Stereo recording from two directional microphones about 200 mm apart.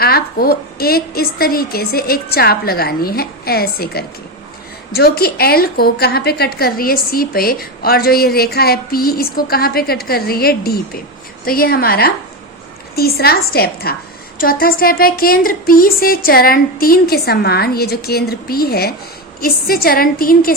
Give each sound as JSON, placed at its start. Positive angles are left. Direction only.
{"t": 0.0, "sound": "a woman's voice", "side_deg": 50}